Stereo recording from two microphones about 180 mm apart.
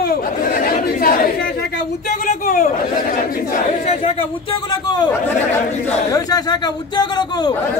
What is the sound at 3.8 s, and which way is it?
A man's voice, 35° left (ahead or behind).